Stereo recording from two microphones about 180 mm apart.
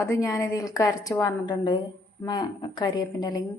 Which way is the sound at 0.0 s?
15° left (ahead or behind).